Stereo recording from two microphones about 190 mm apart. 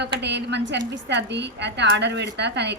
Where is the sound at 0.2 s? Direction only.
65° right (ahead or behind).